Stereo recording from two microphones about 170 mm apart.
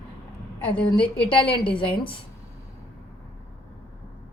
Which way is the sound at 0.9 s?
30° left (ahead or behind).